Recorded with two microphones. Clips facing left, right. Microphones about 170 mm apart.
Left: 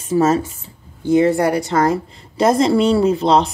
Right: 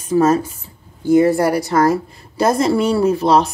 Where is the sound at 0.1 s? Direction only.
25° left (ahead or behind).